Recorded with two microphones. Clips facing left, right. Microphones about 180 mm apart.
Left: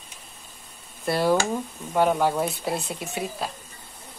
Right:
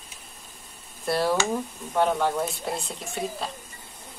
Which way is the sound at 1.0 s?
Centre (ahead or behind).